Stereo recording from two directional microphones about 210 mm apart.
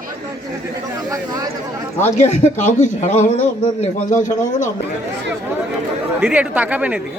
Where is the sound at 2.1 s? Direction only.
35° left (ahead or behind).